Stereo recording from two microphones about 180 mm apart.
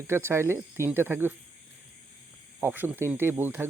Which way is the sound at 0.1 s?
15° right (ahead or behind).